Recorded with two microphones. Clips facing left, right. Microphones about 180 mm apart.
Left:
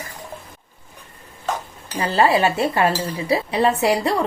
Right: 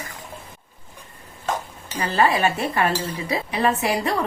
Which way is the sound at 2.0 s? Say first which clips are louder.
Left 3 dB; 30° left (ahead or behind).